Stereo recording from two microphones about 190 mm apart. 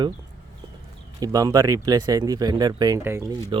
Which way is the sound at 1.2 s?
20° right (ahead or behind).